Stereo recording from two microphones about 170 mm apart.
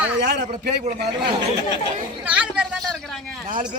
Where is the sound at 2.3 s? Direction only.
5° right (ahead or behind).